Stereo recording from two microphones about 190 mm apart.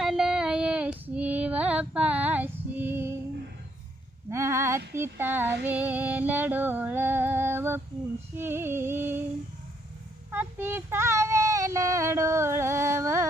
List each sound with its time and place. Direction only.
0.0 s female singing: centre (ahead or behind)
4.3 s a sound: 15° right (ahead or behind)
4.9 s female singing: 10° right (ahead or behind)
8.4 s music: 10° right (ahead or behind)
10.3 s female singing: 10° right (ahead or behind)